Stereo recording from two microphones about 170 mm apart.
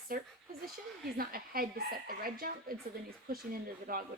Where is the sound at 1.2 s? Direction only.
60° right (ahead or behind).